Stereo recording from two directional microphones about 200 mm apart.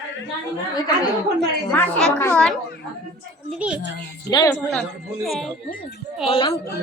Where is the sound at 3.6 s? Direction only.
5° right (ahead or behind).